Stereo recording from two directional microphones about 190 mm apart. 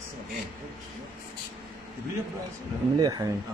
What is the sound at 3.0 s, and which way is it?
Speech, 20° right (ahead or behind).